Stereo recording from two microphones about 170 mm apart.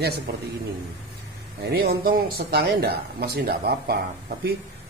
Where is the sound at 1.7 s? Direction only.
65° right (ahead or behind).